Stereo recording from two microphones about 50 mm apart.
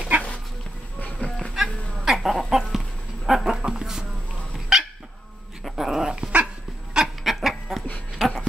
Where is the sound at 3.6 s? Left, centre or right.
Centre.